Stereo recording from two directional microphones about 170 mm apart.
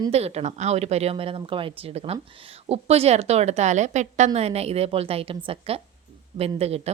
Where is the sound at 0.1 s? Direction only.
40° right (ahead or behind).